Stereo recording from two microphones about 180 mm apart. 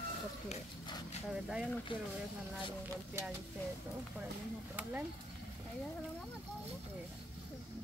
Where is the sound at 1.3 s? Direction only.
5° right (ahead or behind).